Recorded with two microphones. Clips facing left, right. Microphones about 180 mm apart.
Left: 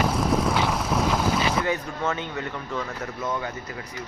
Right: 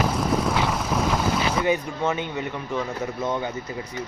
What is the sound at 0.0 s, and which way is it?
Boat, centre (ahead or behind).